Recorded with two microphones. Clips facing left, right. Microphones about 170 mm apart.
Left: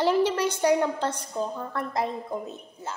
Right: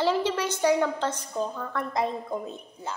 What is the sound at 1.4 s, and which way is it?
Child singing, 5° right (ahead or behind).